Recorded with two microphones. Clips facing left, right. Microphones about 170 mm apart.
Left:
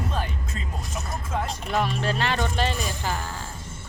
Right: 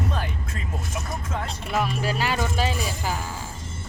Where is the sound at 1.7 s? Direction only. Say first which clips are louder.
Even; 5° right (ahead or behind).